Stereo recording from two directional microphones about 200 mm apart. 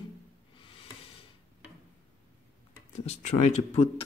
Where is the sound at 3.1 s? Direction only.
35° left (ahead or behind).